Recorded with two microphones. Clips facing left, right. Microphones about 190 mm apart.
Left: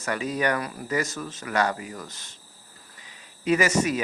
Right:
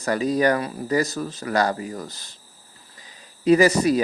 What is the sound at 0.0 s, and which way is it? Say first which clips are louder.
Speech: right 6 dB; 35° right (ahead or behind).